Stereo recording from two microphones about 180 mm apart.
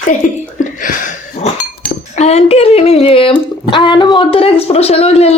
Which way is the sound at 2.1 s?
35° left (ahead or behind).